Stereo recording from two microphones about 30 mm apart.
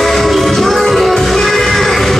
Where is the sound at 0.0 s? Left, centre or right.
Centre.